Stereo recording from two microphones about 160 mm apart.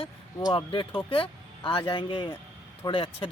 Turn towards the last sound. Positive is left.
turn(degrees=35)  # may be behind; listen again after turning